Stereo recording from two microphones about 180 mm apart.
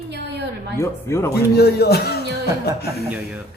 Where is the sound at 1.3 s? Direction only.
65° left (ahead or behind).